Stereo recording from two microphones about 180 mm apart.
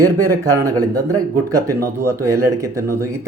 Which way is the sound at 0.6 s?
20° right (ahead or behind).